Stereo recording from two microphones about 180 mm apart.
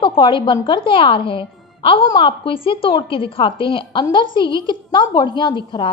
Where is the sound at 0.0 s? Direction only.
30° left (ahead or behind).